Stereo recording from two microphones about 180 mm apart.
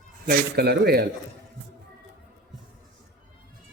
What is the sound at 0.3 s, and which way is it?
Speech, 65° right (ahead or behind).